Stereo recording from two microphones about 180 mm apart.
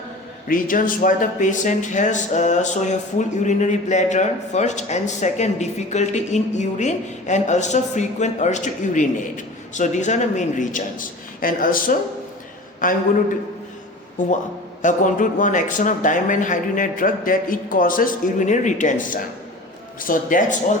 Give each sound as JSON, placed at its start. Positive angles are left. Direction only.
{"t": 0.4, "sound": "speech", "side_deg": 50}
{"t": 14.8, "sound": "speech", "side_deg": 45}